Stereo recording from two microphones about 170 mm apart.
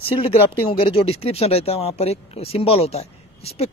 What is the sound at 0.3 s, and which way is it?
Speech, 35° left (ahead or behind).